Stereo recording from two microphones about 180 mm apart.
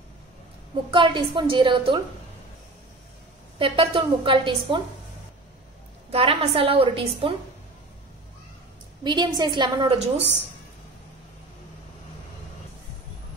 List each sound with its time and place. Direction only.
0.9 s a woman's voice: 30° right (ahead or behind)
3.5 s a woman's voice: 30° right (ahead or behind)
6.0 s a woman's voice: 30° right (ahead or behind)
9.0 s a woman's voice: 25° right (ahead or behind)